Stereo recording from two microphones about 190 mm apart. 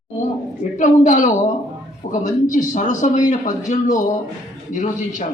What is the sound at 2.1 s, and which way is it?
A man's voice, 40° left (ahead or behind).